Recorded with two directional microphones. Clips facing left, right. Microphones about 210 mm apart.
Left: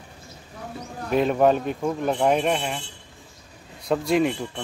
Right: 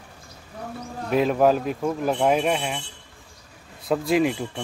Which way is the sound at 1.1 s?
Centre (ahead or behind).